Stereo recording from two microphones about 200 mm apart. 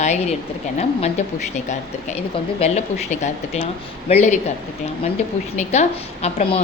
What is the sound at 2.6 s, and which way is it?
A woman's voice, 35° left (ahead or behind).